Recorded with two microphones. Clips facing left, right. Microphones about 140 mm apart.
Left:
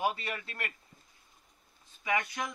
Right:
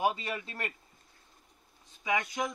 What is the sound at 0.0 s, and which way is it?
Speech, 20° right (ahead or behind).